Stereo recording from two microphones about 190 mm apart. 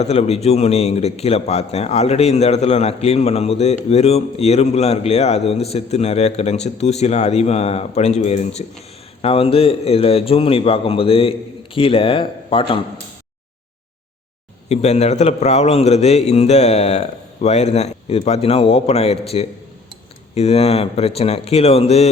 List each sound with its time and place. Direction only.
0.0 s a man's voice: 35° left (ahead or behind)
14.7 s a man's voice: 35° left (ahead or behind)